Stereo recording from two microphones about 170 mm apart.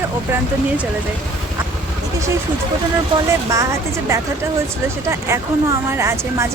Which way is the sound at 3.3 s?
15° right (ahead or behind).